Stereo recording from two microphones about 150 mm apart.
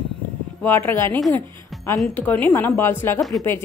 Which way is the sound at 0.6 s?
15° left (ahead or behind).